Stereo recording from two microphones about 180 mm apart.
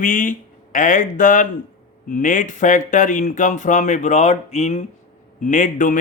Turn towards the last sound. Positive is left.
turn(degrees=45)  # may be behind; listen again after turning